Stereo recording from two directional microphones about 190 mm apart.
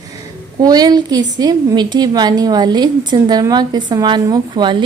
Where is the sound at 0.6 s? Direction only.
20° right (ahead or behind).